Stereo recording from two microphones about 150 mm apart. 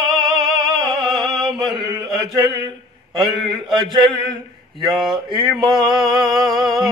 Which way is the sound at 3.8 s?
30° right (ahead or behind).